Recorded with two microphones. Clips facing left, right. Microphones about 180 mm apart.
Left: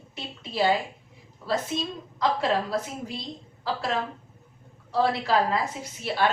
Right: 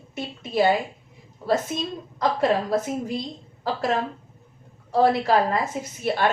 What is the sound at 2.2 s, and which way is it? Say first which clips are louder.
A woman's voice: right 3 dB; 50° right (ahead or behind).